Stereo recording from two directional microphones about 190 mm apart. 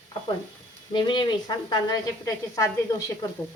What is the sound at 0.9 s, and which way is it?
Speech, 25° left (ahead or behind).